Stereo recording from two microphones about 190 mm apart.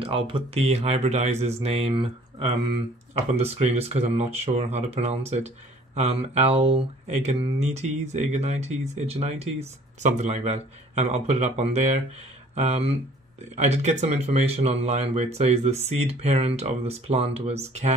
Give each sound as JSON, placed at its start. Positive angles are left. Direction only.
{"t": 0.0, "sound": "speech", "side_deg": -30}